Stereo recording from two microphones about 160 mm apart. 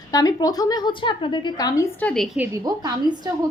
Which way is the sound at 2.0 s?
5° left (ahead or behind).